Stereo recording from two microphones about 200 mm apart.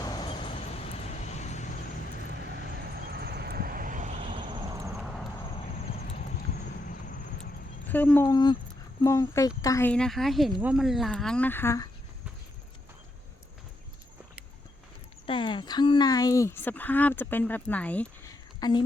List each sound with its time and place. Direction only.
0.0 s vehicle: 20° left (ahead or behind); by 1.6 s 35° left (ahead or behind)
3.1 s vehicle: 55° right (ahead or behind); by 4.3 s 40° right (ahead or behind)
4.3 s vehicle: 20° right (ahead or behind)
7.9 s speech: 10° left (ahead or behind)
15.3 s speech: 25° left (ahead or behind); by 18.3 s 5° left (ahead or behind)
18.6 s speech: 20° left (ahead or behind)